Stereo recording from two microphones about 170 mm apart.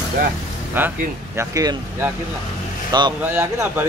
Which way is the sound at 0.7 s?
15° right (ahead or behind).